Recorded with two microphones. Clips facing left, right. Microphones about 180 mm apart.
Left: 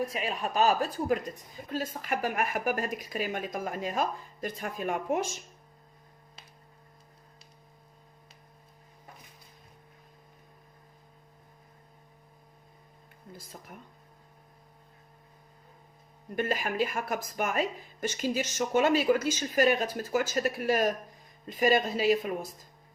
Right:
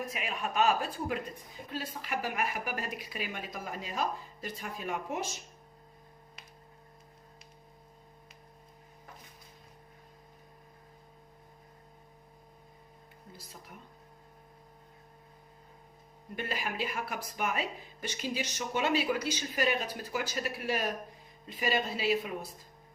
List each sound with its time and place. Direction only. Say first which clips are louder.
0.0 s a woman's voice: left 5 dB; 30° left (ahead or behind); by 5.3 s 50° left (ahead or behind)
13.3 s a sound: left 5 dB; 50° left (ahead or behind)
16.3 s a woman's voice: left 6 dB; 45° left (ahead or behind)